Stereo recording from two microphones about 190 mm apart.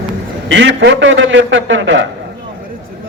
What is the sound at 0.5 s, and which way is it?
A man's voice, 70° right (ahead or behind).